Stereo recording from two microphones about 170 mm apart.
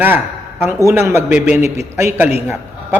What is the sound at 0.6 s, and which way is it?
Speech, 15° right (ahead or behind).